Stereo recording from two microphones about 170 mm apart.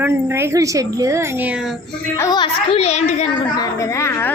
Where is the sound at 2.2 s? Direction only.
25° left (ahead or behind).